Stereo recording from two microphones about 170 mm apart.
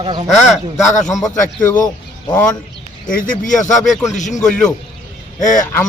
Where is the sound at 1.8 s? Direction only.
25° left (ahead or behind).